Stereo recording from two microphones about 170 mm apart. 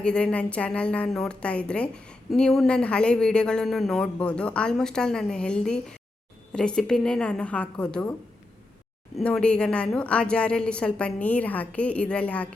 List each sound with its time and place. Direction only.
0.0 s speech: 5° left (ahead or behind)
9.1 s a woman's voice: 5° left (ahead or behind)